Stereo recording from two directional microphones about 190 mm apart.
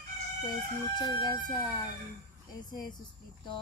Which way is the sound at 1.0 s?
20° left (ahead or behind).